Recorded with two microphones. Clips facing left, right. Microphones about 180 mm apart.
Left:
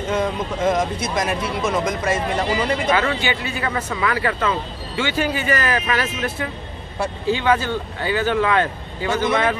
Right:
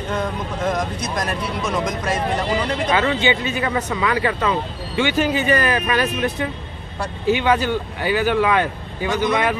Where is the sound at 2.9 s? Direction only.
20° right (ahead or behind).